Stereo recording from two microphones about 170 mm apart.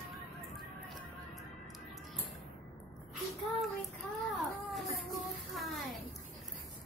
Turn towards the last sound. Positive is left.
turn(degrees=0)  # may be behind; listen again after turning